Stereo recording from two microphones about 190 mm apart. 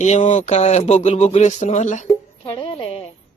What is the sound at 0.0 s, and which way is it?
Speech, 40° left (ahead or behind).